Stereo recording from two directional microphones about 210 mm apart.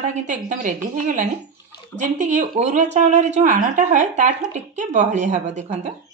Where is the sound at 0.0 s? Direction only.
35° right (ahead or behind).